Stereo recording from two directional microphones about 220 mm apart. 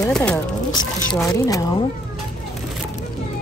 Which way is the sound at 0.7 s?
15° left (ahead or behind).